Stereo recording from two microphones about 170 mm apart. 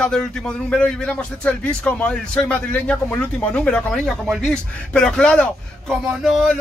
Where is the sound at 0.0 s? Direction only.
5° left (ahead or behind).